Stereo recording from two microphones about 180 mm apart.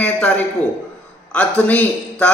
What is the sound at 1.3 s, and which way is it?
A man's voice, 5° left (ahead or behind).